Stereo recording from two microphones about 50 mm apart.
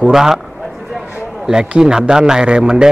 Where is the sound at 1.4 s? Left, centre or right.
Centre.